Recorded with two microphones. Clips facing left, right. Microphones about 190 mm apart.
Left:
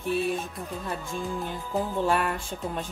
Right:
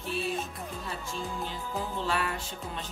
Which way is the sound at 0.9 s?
50° left (ahead or behind).